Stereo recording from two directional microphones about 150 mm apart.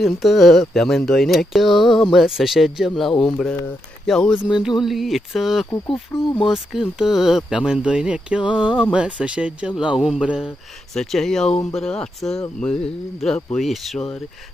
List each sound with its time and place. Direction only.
0.0 s speech: centre (ahead or behind)
6.1 s speech: 15° left (ahead or behind)
6.5 s speech: 5° right (ahead or behind)